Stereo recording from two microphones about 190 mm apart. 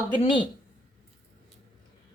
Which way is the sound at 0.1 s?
25° left (ahead or behind).